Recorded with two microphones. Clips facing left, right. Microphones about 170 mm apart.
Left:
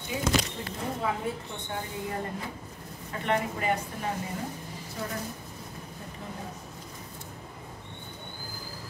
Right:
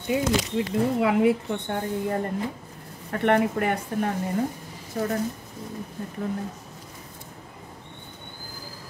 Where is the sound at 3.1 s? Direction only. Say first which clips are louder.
Right 8 dB; 60° right (ahead or behind).